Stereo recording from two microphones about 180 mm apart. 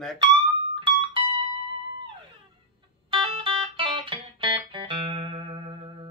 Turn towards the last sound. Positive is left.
turn(degrees=-30)  # may be behind; listen again after turning